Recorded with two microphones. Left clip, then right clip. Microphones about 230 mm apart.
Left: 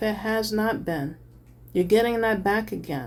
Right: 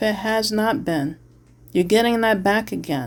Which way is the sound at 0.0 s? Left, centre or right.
Right.